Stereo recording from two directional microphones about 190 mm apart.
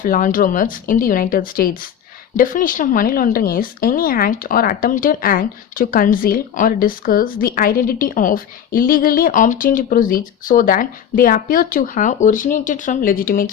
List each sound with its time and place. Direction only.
0.0 s speech: 45° left (ahead or behind)